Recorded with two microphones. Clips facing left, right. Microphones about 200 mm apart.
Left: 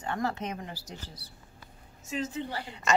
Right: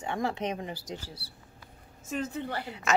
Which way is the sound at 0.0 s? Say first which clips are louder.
Right 1 dB; 15° right (ahead or behind).